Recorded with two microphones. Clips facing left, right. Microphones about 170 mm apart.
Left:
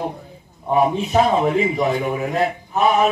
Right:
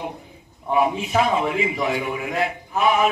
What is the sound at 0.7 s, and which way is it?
A man's voice, 40° left (ahead or behind).